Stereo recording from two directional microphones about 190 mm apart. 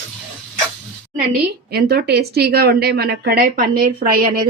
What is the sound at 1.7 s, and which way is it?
A woman's voice, 55° right (ahead or behind).